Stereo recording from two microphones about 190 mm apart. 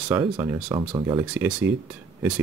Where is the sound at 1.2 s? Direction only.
5° right (ahead or behind).